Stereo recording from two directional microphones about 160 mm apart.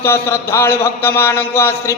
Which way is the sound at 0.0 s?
15° left (ahead or behind).